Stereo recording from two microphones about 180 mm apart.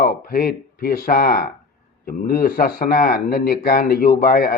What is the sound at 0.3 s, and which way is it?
Speech, 55° left (ahead or behind).